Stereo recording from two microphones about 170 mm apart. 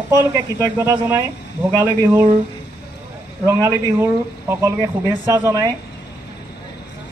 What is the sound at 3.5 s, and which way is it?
Speech, 15° right (ahead or behind).